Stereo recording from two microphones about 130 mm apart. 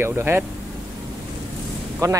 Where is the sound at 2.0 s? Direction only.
25° right (ahead or behind).